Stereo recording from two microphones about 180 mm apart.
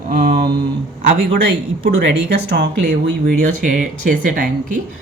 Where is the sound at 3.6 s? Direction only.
45° right (ahead or behind).